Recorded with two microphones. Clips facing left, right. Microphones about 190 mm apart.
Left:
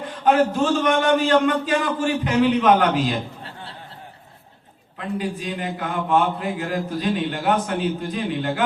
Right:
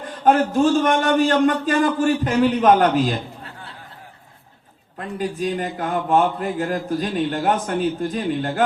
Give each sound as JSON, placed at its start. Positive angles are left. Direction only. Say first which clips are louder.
{"t": 0.0, "sound": "a man's voice", "louder": "right 1 dB", "side_deg": -45}
{"t": 3.4, "sound": "a sound", "louder": "left 1 dB", "side_deg": 30}
{"t": 4.9, "sound": "a man's voice", "louder": "right 1 dB", "side_deg": -45}